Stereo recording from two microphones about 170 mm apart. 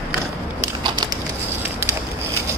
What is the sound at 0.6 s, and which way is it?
Crushing, 25° right (ahead or behind).